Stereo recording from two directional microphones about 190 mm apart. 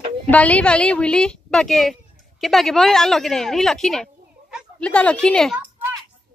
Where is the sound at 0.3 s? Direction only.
5° left (ahead or behind).